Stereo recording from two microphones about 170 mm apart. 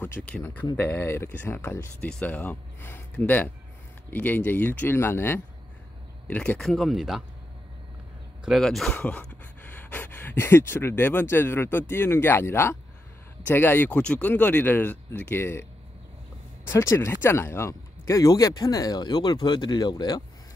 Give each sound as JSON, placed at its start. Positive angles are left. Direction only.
{"t": 0.0, "sound": "speech", "side_deg": 10}
{"t": 8.5, "sound": "speech", "side_deg": 0}
{"t": 16.6, "sound": "speech", "side_deg": 15}